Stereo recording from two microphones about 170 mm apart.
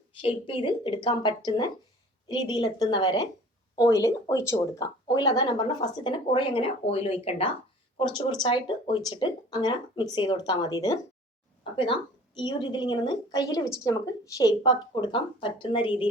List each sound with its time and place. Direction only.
0.1 s speech: 30° left (ahead or behind)
12.4 s speech: 25° left (ahead or behind)